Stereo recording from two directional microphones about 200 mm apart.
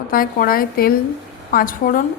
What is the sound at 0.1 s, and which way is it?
A woman's voice, 45° left (ahead or behind).